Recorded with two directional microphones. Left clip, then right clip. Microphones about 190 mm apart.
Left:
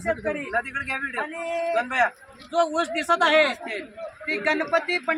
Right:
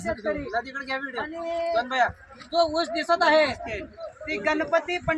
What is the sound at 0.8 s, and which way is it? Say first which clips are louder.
A man's voice: left 3 dB; centre (ahead or behind).